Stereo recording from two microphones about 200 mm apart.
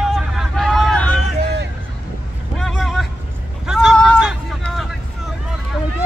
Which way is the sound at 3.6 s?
Centre (ahead or behind).